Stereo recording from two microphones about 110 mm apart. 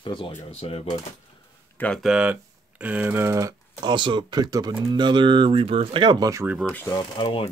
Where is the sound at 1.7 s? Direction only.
15° left (ahead or behind).